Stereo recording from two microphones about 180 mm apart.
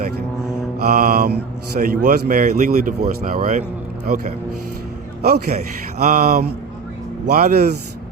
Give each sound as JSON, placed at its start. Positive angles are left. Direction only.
{"t": 0.9, "sound": "speech", "side_deg": -50}